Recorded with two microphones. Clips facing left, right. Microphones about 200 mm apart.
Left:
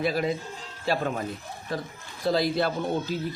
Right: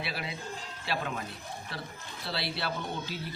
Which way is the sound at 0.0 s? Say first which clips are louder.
Left 11 dB; 45° left (ahead or behind).